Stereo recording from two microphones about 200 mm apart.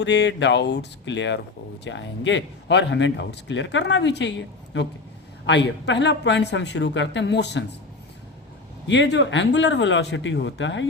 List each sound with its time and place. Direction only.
0.0 s speech: 60° left (ahead or behind)
8.9 s speech: 60° left (ahead or behind)